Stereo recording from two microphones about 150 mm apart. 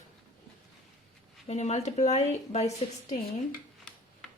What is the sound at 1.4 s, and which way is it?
Speech, 50° left (ahead or behind).